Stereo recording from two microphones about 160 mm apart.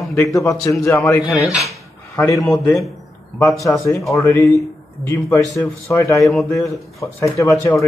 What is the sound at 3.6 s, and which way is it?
A man's voice, 20° left (ahead or behind).